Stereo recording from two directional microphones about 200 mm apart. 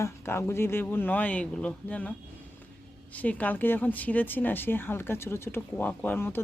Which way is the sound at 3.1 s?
10° left (ahead or behind).